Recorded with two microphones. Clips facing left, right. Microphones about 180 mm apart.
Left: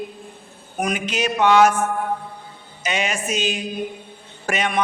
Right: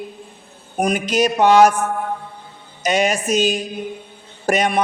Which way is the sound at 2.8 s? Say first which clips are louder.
Right 6 dB; 40° right (ahead or behind).